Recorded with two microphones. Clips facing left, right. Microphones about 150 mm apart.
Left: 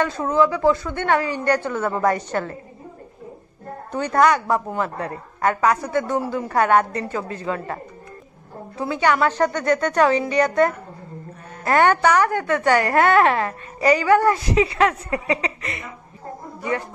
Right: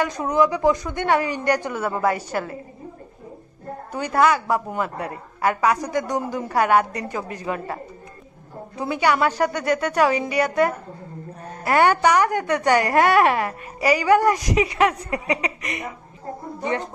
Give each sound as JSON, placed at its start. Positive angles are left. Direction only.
{"t": 0.0, "sound": "a woman's voice", "side_deg": -15}
{"t": 3.9, "sound": "a woman's voice", "side_deg": -10}